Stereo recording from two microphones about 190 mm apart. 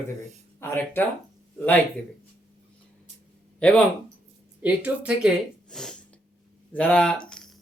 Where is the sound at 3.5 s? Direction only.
5° left (ahead or behind).